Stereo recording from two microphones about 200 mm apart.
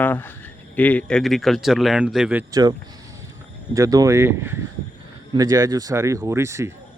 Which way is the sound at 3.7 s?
15° right (ahead or behind).